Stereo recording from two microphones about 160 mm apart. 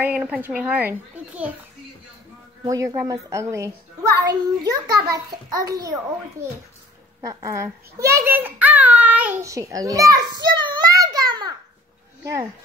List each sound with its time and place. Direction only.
0.0 s a child's voice: 10° right (ahead or behind)
2.6 s a child's voice: 20° right (ahead or behind)
7.2 s a child's voice: 20° right (ahead or behind)
10.4 s a sound: 30° right (ahead or behind)
12.2 s speech: 20° right (ahead or behind)